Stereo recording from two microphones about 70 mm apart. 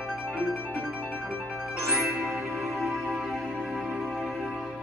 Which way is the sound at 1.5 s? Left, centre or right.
Centre.